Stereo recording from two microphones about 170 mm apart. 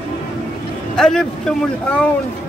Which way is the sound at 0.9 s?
5° left (ahead or behind).